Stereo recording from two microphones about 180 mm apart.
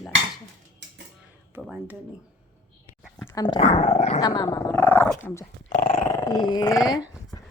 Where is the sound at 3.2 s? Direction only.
20° left (ahead or behind).